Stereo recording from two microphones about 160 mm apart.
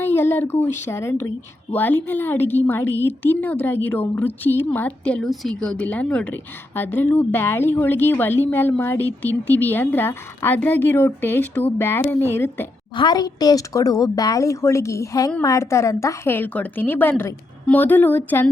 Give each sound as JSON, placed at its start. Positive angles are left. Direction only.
{"t": 0.0, "sound": "a woman's voice", "side_deg": 15}
{"t": 13.0, "sound": "a woman's voice", "side_deg": 25}